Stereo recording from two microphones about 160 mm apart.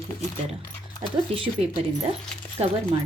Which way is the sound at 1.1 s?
35° right (ahead or behind).